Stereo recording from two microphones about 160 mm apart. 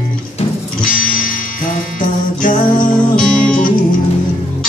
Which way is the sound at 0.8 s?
55° left (ahead or behind).